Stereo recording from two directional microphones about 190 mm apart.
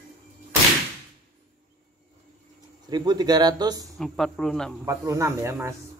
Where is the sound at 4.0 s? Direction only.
Centre (ahead or behind).